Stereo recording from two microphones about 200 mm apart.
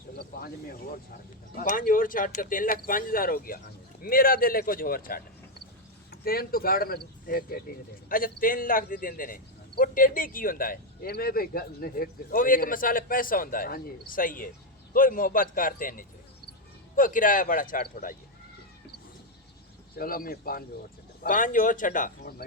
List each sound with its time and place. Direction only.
0.2 s a man's voice: 50° left (ahead or behind)
20.0 s a man's voice: 45° left (ahead or behind)